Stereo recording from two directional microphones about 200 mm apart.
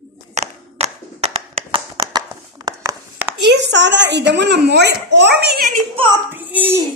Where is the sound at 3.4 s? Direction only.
60° right (ahead or behind).